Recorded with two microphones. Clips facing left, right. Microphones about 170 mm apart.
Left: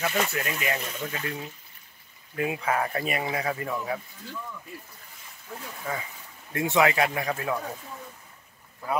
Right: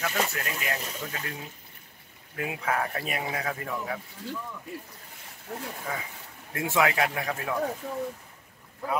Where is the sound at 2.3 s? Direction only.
Centre (ahead or behind).